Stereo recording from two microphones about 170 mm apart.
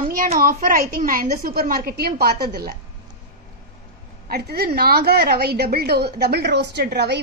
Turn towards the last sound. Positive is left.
turn(degrees=-80)